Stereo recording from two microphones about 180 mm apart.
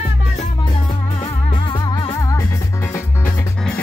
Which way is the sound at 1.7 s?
25° left (ahead or behind).